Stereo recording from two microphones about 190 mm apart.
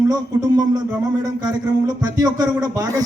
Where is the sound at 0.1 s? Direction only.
20° right (ahead or behind).